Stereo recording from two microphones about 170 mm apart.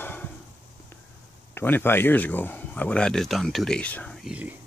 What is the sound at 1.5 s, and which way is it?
Speech, 10° left (ahead or behind).